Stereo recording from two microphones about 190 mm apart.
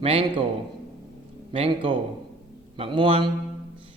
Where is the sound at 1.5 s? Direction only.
30° right (ahead or behind).